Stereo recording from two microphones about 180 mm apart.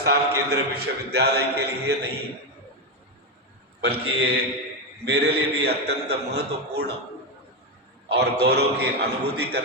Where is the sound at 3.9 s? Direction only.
65° right (ahead or behind).